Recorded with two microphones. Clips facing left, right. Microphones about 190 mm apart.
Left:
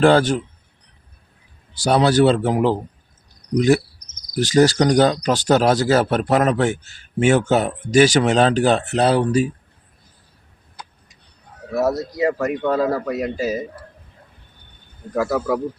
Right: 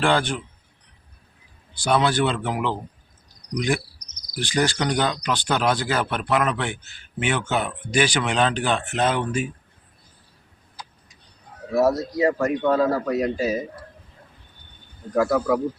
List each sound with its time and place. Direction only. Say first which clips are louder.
0.0 s cricket: left 7 dB; 40° left (ahead or behind)
1.7 s cricket: left 5 dB; 40° left (ahead or behind)
4.1 s cricket: left 8 dB; 40° left (ahead or behind)
10.8 s vehicle: left 2 dB; 55° left (ahead or behind)
11.7 s a man's voice: right 1 dB; centre (ahead or behind)
15.1 s a man's voice: even; centre (ahead or behind)